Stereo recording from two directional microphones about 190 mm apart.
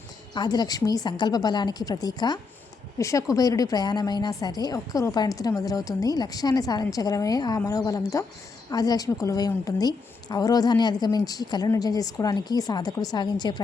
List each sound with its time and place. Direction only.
0.3 s a woman's voice: 20° left (ahead or behind)